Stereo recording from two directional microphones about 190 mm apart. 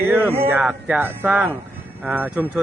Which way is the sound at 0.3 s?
10° right (ahead or behind).